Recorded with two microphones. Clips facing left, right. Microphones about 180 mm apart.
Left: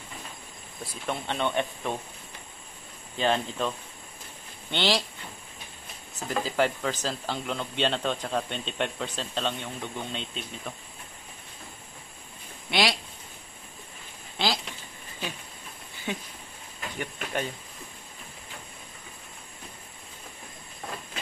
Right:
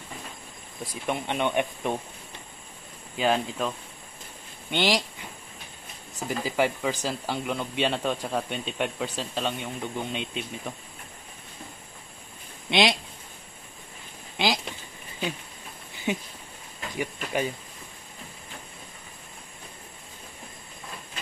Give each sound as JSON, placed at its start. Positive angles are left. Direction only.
{"t": 1.0, "sound": "speech", "side_deg": -15}
{"t": 3.2, "sound": "speech", "side_deg": -10}
{"t": 6.1, "sound": "speech", "side_deg": -10}
{"t": 12.6, "sound": "speech", "side_deg": -20}
{"t": 14.3, "sound": "a sound", "side_deg": -15}
{"t": 16.1, "sound": "speech", "side_deg": -15}
{"t": 16.9, "sound": "speech", "side_deg": -5}